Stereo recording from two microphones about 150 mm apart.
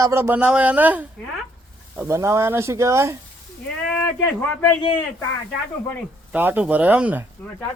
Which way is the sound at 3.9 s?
10° left (ahead or behind).